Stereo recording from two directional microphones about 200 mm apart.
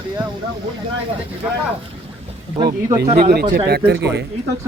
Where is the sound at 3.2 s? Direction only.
50° right (ahead or behind).